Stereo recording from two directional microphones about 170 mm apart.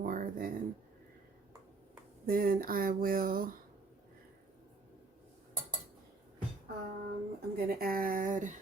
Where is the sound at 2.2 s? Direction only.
55° right (ahead or behind).